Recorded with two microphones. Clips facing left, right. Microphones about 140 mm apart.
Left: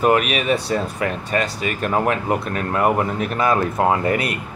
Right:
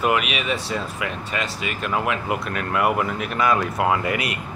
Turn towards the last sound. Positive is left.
turn(degrees=35)  # may be behind; listen again after turning